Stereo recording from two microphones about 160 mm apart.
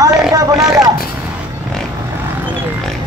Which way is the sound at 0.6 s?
Centre (ahead or behind).